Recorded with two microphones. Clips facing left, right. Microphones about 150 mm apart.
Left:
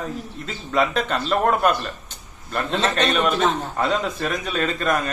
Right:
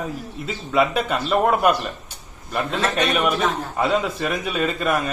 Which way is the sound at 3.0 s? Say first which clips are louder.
Even; 5° right (ahead or behind).